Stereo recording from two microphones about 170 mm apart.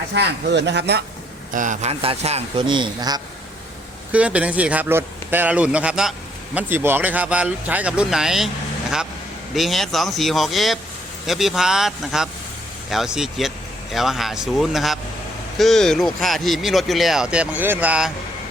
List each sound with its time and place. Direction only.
0.1 s speech: 85° right
1.5 s a man's voice: 50° right (ahead or behind); by 3.2 s 25° right (ahead or behind)
4.1 s speech: 10° right (ahead or behind)
9.6 s speech: centre (ahead or behind)